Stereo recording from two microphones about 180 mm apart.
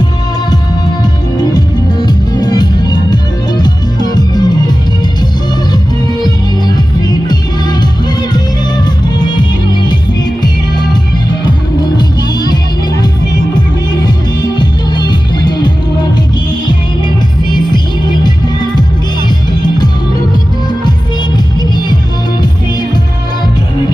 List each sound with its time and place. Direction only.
2.0 s music: 25° left (ahead or behind)
8.8 s music: 25° left (ahead or behind)
14.0 s music: 25° left (ahead or behind)
17.5 s music: 25° left (ahead or behind)